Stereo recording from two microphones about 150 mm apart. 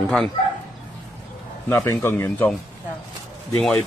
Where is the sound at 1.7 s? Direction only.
15° left (ahead or behind).